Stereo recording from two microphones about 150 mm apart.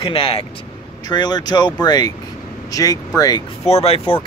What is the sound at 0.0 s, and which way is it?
Speech, 35° left (ahead or behind).